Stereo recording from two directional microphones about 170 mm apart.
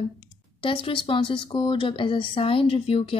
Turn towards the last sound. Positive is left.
turn(degrees=35)  # may be behind; listen again after turning